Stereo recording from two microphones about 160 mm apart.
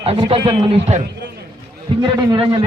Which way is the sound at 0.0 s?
40° right (ahead or behind).